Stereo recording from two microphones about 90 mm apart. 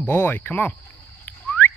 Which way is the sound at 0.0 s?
25° left (ahead or behind).